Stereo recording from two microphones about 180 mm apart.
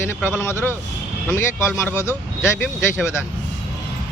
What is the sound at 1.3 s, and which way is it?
Speech, 15° left (ahead or behind).